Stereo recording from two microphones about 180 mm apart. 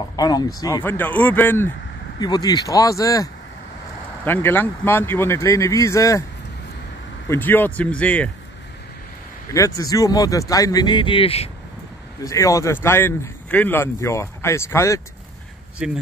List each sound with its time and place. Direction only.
0.1 s speech: 20° left (ahead or behind)
2.1 s speech: 25° left (ahead or behind)
7.2 s speech: 10° left (ahead or behind)
9.5 s speech: 20° left (ahead or behind)
12.3 s speech: 20° left (ahead or behind)
15.8 s speech: 5° right (ahead or behind)